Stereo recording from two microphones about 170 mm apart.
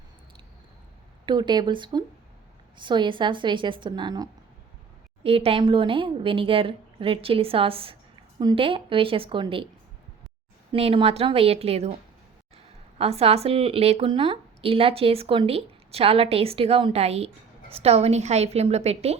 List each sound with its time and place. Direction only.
1.2 s a woman's voice: 25° right (ahead or behind)
5.2 s speech: 35° right (ahead or behind)
10.7 s speech: 35° right (ahead or behind)
13.0 s speech: 35° right (ahead or behind)